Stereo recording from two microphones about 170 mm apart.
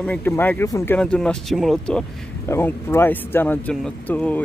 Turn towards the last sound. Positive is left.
turn(degrees=10)  # may be behind; listen again after turning